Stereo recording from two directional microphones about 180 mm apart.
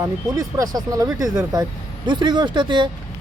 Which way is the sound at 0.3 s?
20° right (ahead or behind).